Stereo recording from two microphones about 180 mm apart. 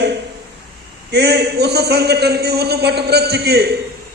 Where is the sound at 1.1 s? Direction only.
65° right (ahead or behind).